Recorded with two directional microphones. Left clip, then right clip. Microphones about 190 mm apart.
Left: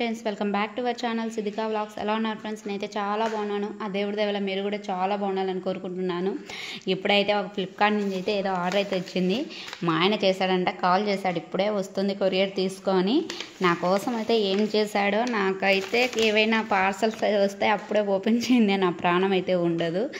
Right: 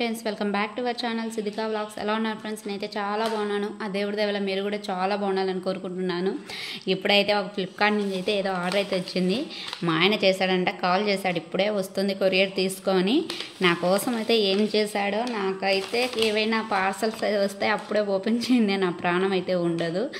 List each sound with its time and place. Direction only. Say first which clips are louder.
0.0 s a woman's voice: even; centre (ahead or behind)
15.0 s speech: left 2 dB; 15° left (ahead or behind)